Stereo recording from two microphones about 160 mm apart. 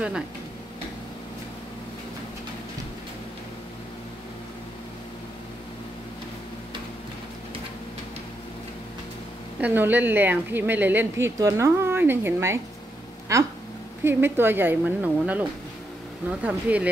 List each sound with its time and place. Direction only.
9.6 s a woman's voice: 10° right (ahead or behind)